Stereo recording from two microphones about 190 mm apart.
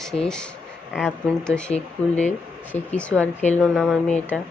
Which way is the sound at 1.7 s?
40° left (ahead or behind).